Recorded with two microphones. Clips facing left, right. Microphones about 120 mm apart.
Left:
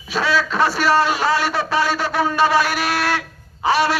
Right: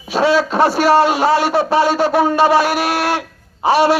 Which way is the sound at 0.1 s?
35° right (ahead or behind).